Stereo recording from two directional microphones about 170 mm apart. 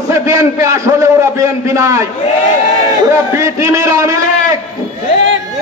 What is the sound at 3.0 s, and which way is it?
A man's voice, 15° right (ahead or behind).